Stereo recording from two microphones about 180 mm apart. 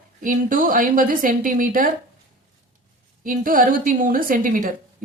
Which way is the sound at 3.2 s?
50° right (ahead or behind).